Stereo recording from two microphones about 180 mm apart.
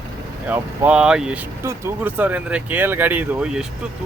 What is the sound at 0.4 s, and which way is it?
Speech, 10° right (ahead or behind).